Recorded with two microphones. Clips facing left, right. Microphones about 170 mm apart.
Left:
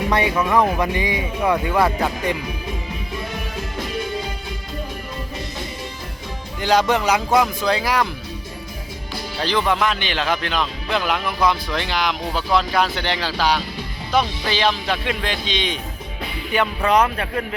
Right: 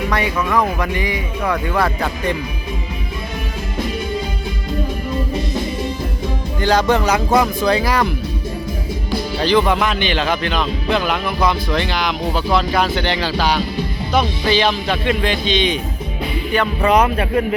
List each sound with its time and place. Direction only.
0.1 s speech: 25° left (ahead or behind)
6.6 s speech: centre (ahead or behind)
9.4 s speech: 5° right (ahead or behind)
16.8 s speech: 10° right (ahead or behind)